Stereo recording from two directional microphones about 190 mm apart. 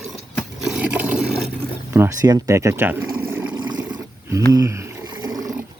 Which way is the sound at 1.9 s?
15° right (ahead or behind).